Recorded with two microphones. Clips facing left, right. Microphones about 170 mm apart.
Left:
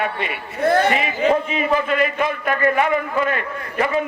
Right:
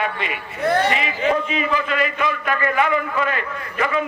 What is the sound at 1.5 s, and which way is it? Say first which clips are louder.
A man's voice: left 3 dB; 50° left (ahead or behind).